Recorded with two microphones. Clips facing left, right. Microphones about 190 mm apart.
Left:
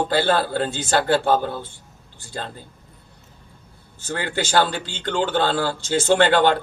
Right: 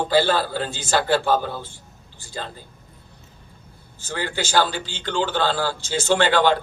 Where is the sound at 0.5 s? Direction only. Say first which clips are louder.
Left 2 dB; 60° left (ahead or behind).